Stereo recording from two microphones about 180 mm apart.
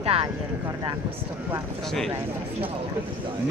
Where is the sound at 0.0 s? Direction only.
35° right (ahead or behind).